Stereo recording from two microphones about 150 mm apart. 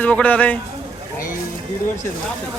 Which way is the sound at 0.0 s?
10° left (ahead or behind).